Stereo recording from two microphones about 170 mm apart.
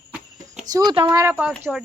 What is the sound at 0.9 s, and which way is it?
Speech, 25° right (ahead or behind).